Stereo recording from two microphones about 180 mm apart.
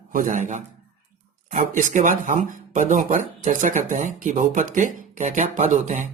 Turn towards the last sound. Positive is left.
turn(degrees=-40)  # may be behind; listen again after turning